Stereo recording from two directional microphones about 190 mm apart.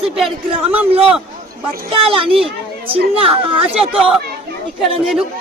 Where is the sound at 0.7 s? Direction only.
30° right (ahead or behind).